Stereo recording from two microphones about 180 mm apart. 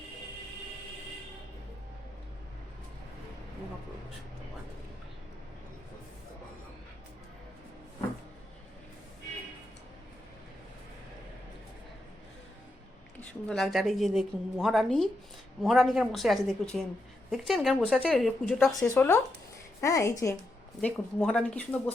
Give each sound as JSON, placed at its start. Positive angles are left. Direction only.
{"t": 13.1, "sound": "speech", "side_deg": 5}
{"t": 18.9, "sound": "speech", "side_deg": 15}
{"t": 20.8, "sound": "speech", "side_deg": 5}